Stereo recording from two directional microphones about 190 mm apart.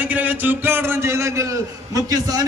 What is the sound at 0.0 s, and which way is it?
A man's voice, 10° right (ahead or behind).